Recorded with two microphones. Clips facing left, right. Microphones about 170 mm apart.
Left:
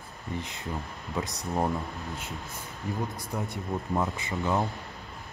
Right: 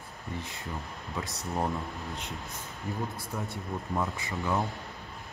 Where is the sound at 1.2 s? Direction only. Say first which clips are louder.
Left 3 dB; 15° left (ahead or behind).